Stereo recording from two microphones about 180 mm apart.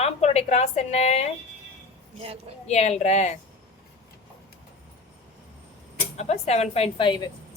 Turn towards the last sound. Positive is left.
turn(degrees=20)  # may be behind; listen again after turning